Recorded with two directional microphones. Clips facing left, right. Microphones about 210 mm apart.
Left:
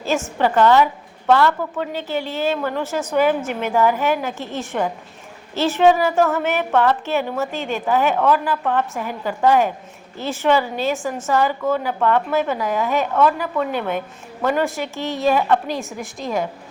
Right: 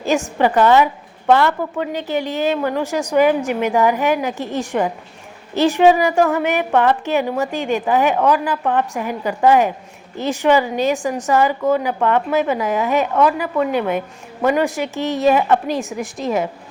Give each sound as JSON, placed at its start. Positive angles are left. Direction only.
{"t": 0.3, "sound": "a woman's voice", "side_deg": -15}
{"t": 13.6, "sound": "a woman's voice", "side_deg": 0}
{"t": 14.4, "sound": "a woman's voice", "side_deg": -15}
{"t": 15.8, "sound": "a woman's voice", "side_deg": 0}